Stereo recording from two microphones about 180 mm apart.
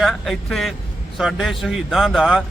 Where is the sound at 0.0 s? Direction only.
Centre (ahead or behind).